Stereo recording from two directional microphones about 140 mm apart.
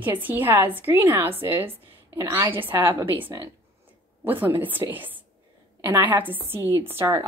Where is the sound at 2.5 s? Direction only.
15° right (ahead or behind).